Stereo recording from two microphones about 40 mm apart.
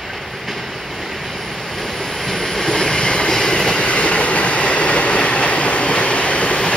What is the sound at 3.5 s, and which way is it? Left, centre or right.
Train, left.